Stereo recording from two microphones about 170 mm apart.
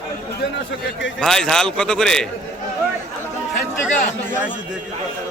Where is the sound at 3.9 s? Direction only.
50° left (ahead or behind).